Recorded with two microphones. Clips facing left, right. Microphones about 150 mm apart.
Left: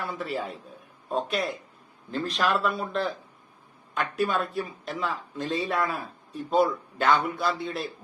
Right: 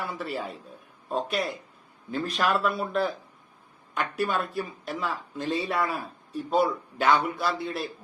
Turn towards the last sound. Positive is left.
turn(degrees=0)  # may be behind; listen again after turning